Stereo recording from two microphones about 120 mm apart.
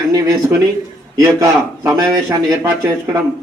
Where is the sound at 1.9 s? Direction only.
25° right (ahead or behind).